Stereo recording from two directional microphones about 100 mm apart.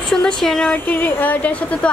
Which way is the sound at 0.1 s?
5° left (ahead or behind).